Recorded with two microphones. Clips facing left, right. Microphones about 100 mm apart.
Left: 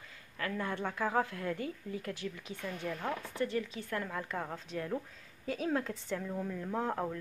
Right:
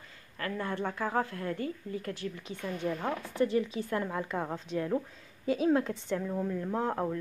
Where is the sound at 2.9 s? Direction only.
20° right (ahead or behind).